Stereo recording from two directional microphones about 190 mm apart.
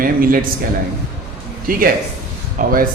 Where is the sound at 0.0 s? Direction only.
50° right (ahead or behind).